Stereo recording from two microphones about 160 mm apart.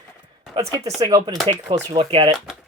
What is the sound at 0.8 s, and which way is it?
Speech, 25° right (ahead or behind).